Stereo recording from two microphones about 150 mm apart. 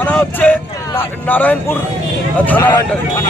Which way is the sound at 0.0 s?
10° left (ahead or behind).